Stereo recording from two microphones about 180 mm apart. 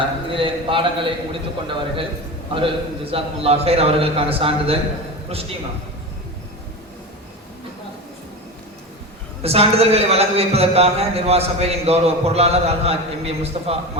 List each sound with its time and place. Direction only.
0.3 s a man's voice: 30° right (ahead or behind)
9.4 s a man's voice: 35° right (ahead or behind)